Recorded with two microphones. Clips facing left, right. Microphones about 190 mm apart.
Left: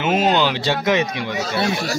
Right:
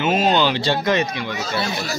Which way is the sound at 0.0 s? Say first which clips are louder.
Even; 15° left (ahead or behind).